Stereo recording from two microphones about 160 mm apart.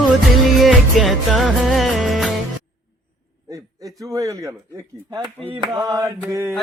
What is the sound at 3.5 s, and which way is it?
A man's voice, 20° right (ahead or behind).